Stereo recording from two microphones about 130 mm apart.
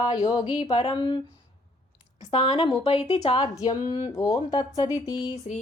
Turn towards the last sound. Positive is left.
turn(degrees=60)  # may be behind; listen again after turning